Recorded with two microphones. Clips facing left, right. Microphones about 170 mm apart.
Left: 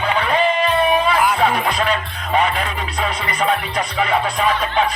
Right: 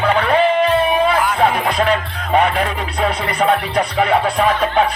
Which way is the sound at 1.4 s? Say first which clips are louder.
Right 2 dB; 55° right (ahead or behind).